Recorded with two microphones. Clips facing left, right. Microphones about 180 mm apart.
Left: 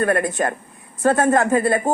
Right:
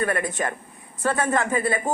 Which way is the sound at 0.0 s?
45° left (ahead or behind).